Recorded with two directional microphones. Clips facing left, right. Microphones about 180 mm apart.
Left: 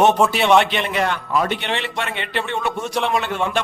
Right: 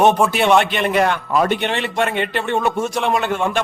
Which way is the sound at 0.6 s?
50° right (ahead or behind).